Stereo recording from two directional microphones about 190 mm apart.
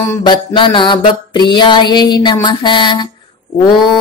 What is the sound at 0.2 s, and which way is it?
Mantra, 25° left (ahead or behind).